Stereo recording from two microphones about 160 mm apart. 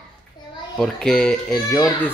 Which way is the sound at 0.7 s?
5° left (ahead or behind).